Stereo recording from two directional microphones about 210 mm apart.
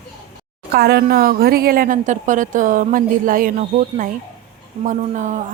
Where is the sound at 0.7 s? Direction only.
50° right (ahead or behind).